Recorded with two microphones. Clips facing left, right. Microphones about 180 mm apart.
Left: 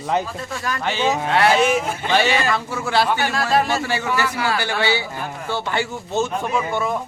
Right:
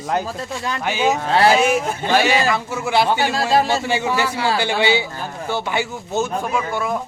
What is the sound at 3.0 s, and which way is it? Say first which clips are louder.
Speech: right 2 dB; 25° right (ahead or behind).